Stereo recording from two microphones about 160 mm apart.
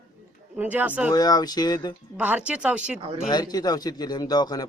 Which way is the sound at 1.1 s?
25° left (ahead or behind).